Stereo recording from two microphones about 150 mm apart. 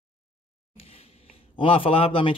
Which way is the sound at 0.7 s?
40° left (ahead or behind).